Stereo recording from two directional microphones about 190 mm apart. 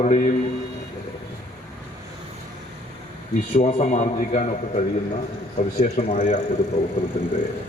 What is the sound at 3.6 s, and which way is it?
A man's voice, 35° left (ahead or behind).